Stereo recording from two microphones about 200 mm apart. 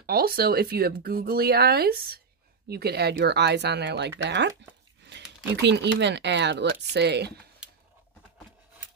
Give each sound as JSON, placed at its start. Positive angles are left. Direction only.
{"t": 0.0, "sound": "speech", "side_deg": -50}